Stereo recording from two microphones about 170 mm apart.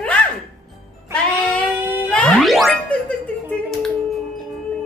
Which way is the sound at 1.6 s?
15° right (ahead or behind).